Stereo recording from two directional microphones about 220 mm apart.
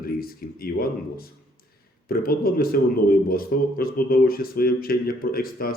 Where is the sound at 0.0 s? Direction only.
40° left (ahead or behind).